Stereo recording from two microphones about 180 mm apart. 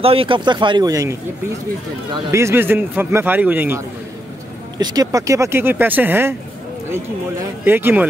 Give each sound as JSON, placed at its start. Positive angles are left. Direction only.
{"t": 0.0, "sound": "speech", "side_deg": -30}
{"t": 2.1, "sound": "a man's voice", "side_deg": -15}
{"t": 4.7, "sound": "a man's voice", "side_deg": -20}